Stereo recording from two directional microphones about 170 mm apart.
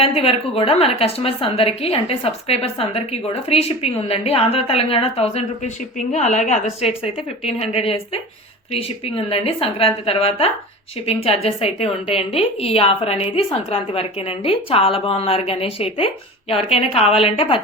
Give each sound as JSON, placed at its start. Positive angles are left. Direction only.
{"t": 0.0, "sound": "a woman's voice", "side_deg": 35}